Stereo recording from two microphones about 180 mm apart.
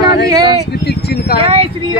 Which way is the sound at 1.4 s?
30° right (ahead or behind).